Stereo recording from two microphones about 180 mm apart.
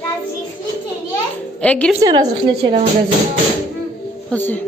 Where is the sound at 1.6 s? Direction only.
5° left (ahead or behind).